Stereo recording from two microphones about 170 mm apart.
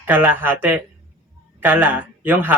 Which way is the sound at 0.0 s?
10° right (ahead or behind).